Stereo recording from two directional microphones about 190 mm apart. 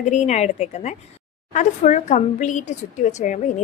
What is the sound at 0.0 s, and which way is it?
A woman's voice, 40° left (ahead or behind).